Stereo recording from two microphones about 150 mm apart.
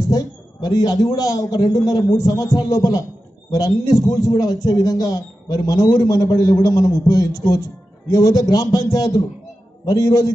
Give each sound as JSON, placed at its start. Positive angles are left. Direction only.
{"t": 0.1, "sound": "a man's voice", "side_deg": 25}